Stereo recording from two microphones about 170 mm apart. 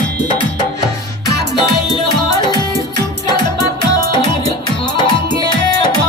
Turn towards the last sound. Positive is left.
turn(degrees=25)  # may be behind; listen again after turning